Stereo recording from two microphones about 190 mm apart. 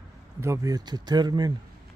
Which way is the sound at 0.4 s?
15° right (ahead or behind).